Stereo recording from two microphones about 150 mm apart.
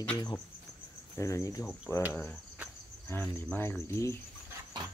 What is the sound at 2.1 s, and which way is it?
Cricket, 10° left (ahead or behind).